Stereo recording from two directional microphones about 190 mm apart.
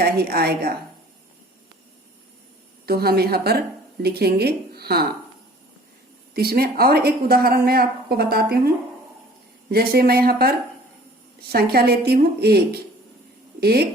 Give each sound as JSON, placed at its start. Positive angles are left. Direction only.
{"t": 0.0, "sound": "speech", "side_deg": -55}
{"t": 2.8, "sound": "speech", "side_deg": -55}
{"t": 6.3, "sound": "speech", "side_deg": -55}
{"t": 9.7, "sound": "speech", "side_deg": -55}
{"t": 11.5, "sound": "speech", "side_deg": -55}